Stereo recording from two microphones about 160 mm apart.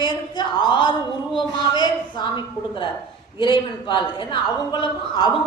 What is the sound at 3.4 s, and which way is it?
A woman's voice, 30° left (ahead or behind).